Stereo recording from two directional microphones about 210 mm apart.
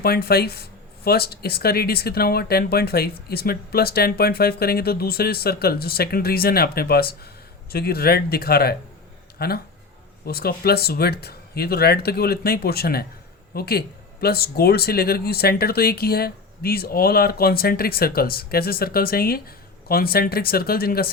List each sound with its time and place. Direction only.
0.0 s speech: 45° left (ahead or behind)